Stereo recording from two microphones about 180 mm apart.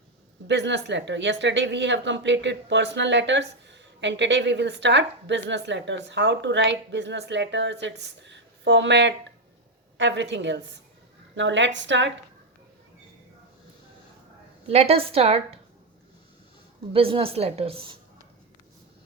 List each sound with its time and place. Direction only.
0.4 s a woman's voice: 80° right
11.3 s a woman's voice: 90° right
14.7 s a woman's voice: 35° right (ahead or behind)
16.9 s a woman's voice: 30° right (ahead or behind)